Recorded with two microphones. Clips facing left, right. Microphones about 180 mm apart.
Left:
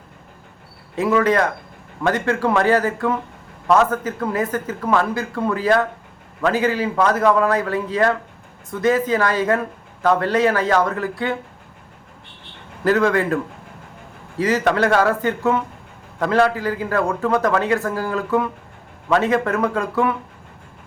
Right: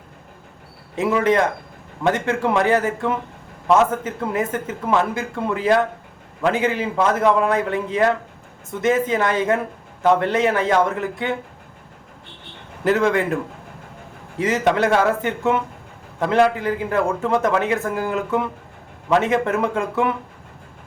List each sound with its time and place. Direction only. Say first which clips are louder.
0.9 s a man's voice: left 1 dB; 25° right (ahead or behind)
12.8 s a man's voice: left 1 dB; 25° right (ahead or behind)
14.3 s a man's voice: left 1 dB; 25° right (ahead or behind)